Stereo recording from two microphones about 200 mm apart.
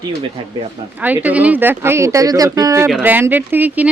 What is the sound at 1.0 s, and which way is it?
Speech, 10° right (ahead or behind).